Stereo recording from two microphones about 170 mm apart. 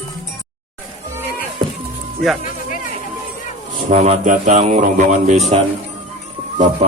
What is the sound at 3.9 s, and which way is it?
A man's voice, 40° right (ahead or behind).